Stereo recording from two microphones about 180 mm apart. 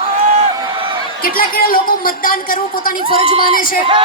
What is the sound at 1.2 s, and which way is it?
A man's voice, 55° left (ahead or behind).